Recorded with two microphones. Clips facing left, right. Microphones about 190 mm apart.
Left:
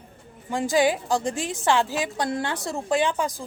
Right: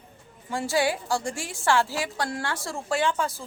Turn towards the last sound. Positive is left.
turn(degrees=15)  # may be behind; listen again after turning